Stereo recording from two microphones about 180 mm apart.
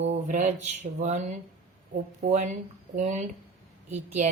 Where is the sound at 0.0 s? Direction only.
40° right (ahead or behind).